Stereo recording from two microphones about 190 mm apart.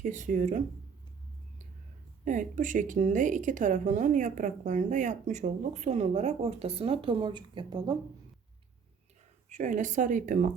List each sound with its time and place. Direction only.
0.0 s speech: 45° right (ahead or behind)
2.2 s a woman's voice: 45° right (ahead or behind); by 7.9 s 25° right (ahead or behind)
9.5 s a woman's voice: 40° right (ahead or behind)